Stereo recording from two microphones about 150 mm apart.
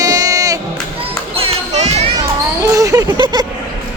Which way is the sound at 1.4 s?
45° right (ahead or behind).